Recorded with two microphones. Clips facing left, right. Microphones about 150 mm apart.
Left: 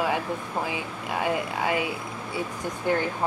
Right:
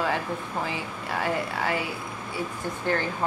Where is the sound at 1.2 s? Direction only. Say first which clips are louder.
Left 1 dB; 20° left (ahead or behind).